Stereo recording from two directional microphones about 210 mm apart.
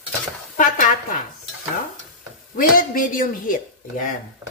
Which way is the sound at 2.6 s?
40° left (ahead or behind).